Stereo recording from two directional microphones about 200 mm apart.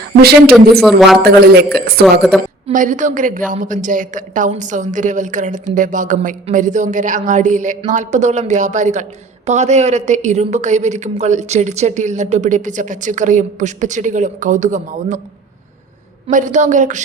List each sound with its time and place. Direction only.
0.2 s speech: 50° right (ahead or behind)
0.8 s speech: centre (ahead or behind)
2.6 s a woman's voice: 40° right (ahead or behind)
16.2 s a woman's voice: 40° right (ahead or behind)